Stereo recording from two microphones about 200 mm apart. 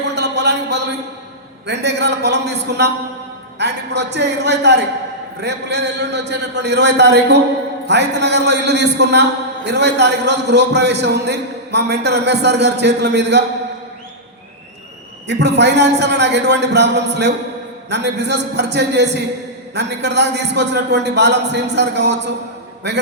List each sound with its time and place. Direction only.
0.2 s a sound: 60° right (ahead or behind)
1.6 s a man's voice: 60° right (ahead or behind)
15.3 s a man's voice: 60° right (ahead or behind)